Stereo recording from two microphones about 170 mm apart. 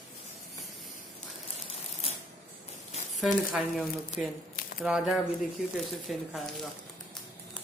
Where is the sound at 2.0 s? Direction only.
35° left (ahead or behind).